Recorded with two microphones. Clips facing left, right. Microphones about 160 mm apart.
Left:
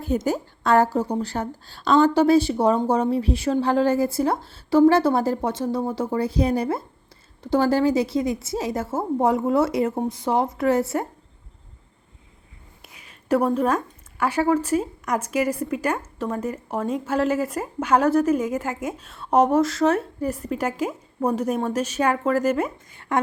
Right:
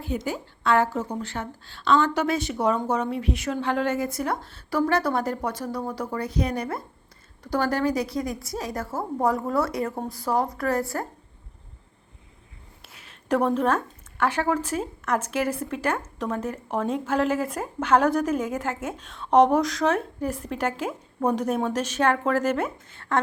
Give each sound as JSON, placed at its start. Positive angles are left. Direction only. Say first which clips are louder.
{"t": 0.0, "sound": "a woman's voice", "louder": "left 6 dB", "side_deg": 45}
{"t": 13.2, "sound": "a woman's voice", "louder": "left 2 dB", "side_deg": 5}